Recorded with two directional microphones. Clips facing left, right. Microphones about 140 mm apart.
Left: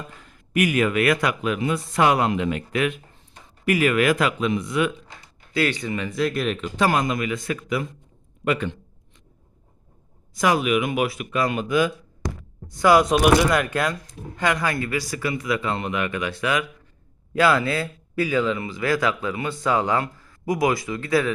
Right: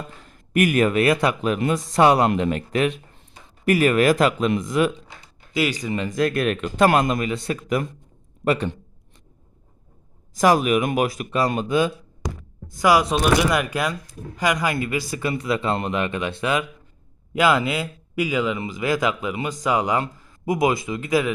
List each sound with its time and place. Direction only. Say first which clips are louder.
0.3 s speech: right 2 dB; 45° right (ahead or behind)
1.5 s speech: right 2 dB; 50° right (ahead or behind)
1.9 s speech: right 4 dB; 35° right (ahead or behind)
6.1 s speech: right 3 dB; 50° right (ahead or behind)
7.1 s speech: right 2 dB; 35° right (ahead or behind)
10.3 s speech: right 3 dB; 40° right (ahead or behind)
12.8 s speech: left 2 dB; 5° right (ahead or behind)
13.5 s speech: left 1 dB; 10° right (ahead or behind)